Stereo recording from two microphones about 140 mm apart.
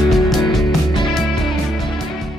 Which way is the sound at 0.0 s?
Centre (ahead or behind).